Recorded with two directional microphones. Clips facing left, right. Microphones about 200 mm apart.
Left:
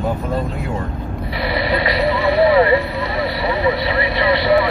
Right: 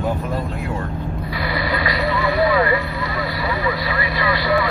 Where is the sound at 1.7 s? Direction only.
25° left (ahead or behind).